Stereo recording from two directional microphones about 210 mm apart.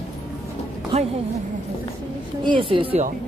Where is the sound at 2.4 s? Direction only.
25° right (ahead or behind).